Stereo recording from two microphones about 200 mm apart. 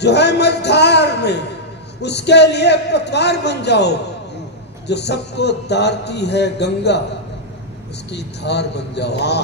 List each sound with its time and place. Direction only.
0.0 s speech: 55° left (ahead or behind)
8.1 s speech: 55° left (ahead or behind)